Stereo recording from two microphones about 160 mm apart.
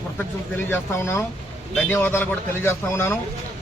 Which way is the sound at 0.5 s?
15° left (ahead or behind).